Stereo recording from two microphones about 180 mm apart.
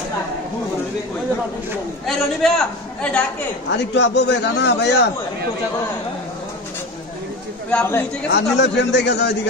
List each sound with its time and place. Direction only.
2.0 s a man's voice: centre (ahead or behind)
3.7 s a man's voice: 70° left (ahead or behind)
7.7 s a man's voice: 10° left (ahead or behind)
8.3 s a man's voice: 75° left (ahead or behind)